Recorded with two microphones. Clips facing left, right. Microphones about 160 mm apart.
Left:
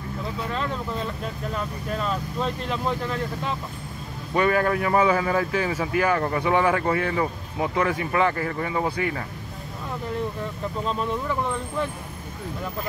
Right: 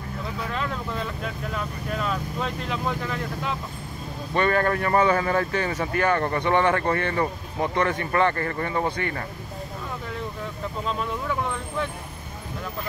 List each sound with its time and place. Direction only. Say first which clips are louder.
1.5 s speech: left 2 dB; centre (ahead or behind)
4.3 s speech: left 1 dB; 10° left (ahead or behind)